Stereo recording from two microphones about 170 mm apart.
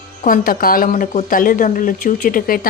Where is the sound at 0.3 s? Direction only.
55° left (ahead or behind).